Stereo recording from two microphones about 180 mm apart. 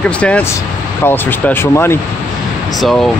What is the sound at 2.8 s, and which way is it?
Speech, centre (ahead or behind).